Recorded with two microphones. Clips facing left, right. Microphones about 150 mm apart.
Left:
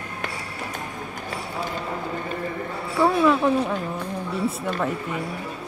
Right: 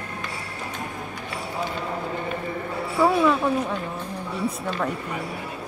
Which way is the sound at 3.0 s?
Centre (ahead or behind).